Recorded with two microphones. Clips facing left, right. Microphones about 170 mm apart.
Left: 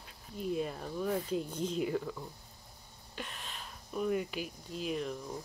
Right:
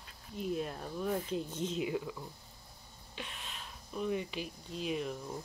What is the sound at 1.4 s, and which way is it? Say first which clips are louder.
Speech: left 1 dB; 10° left (ahead or behind).